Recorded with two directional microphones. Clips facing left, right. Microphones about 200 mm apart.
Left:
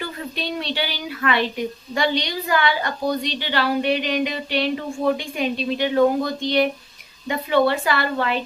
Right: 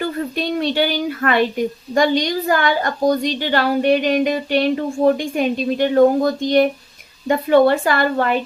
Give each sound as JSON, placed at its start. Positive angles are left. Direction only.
{"t": 0.0, "sound": "a woman's voice", "side_deg": -50}